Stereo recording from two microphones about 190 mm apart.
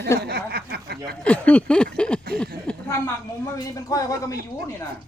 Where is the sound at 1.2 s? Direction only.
5° left (ahead or behind).